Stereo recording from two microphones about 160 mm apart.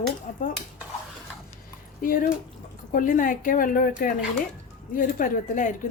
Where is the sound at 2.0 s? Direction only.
60° left (ahead or behind).